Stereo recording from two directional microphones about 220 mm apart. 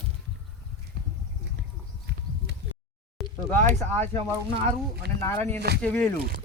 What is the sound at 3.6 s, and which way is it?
Speech, 35° right (ahead or behind).